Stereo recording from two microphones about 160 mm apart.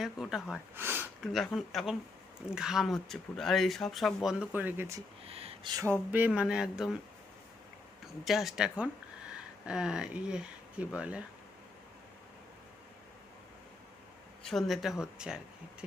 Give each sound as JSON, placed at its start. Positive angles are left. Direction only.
{"t": 0.0, "sound": "speech", "side_deg": -5}
{"t": 0.8, "sound": "a sound", "side_deg": -15}
{"t": 1.2, "sound": "speech", "side_deg": 0}
{"t": 5.3, "sound": "a sound", "side_deg": -40}
{"t": 6.1, "sound": "speech", "side_deg": -10}
{"t": 8.0, "sound": "speech", "side_deg": 0}
{"t": 14.4, "sound": "speech", "side_deg": 0}